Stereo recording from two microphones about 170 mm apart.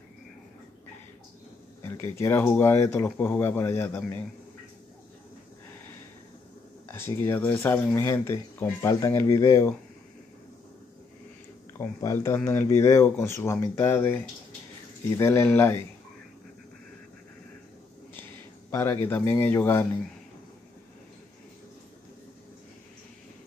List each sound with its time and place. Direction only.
1.8 s speech: 15° left (ahead or behind)
6.9 s speech: 15° left (ahead or behind)
11.8 s speech: 20° left (ahead or behind)
18.7 s speech: 15° left (ahead or behind)